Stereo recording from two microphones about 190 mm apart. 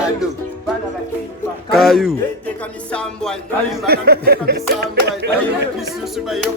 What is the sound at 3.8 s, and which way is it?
Speech, 55° right (ahead or behind).